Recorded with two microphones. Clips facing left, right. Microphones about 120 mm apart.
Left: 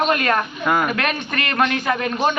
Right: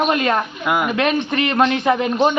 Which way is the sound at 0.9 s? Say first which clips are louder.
Right 5 dB; 20° right (ahead or behind).